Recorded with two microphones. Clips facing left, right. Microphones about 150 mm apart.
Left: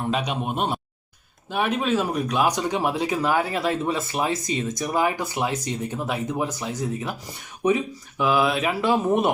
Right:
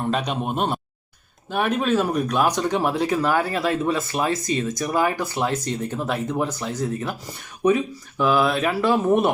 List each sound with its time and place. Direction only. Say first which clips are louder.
0.1 s speech: right 1 dB; 5° left (ahead or behind)
8.2 s speech: right 2 dB; 10° left (ahead or behind)
8.6 s speech: right 2 dB; 20° left (ahead or behind)